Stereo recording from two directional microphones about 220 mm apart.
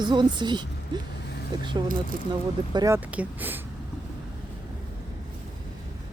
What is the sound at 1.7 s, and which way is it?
A woman's voice, 20° right (ahead or behind).